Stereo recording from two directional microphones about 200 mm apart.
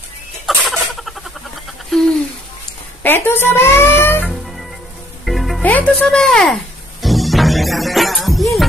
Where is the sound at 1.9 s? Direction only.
Centre (ahead or behind).